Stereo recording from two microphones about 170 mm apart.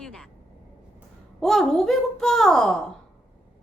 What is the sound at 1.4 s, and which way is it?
A child's voice, 5° left (ahead or behind).